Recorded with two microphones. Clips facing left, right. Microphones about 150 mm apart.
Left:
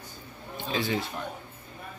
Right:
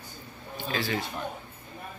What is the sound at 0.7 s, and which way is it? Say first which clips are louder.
Speech: left 2 dB; 20° left (ahead or behind).